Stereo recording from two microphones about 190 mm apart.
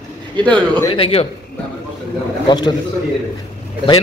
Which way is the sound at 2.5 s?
20° left (ahead or behind).